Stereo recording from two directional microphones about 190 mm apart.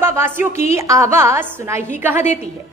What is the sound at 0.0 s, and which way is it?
A woman's voice, 10° right (ahead or behind).